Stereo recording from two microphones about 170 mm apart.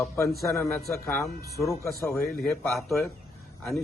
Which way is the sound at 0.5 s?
15° left (ahead or behind).